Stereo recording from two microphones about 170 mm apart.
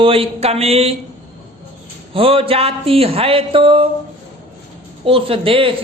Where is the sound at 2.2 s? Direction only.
35° right (ahead or behind).